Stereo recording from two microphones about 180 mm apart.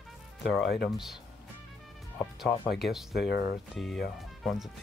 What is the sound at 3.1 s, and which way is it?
Speech, 65° left (ahead or behind).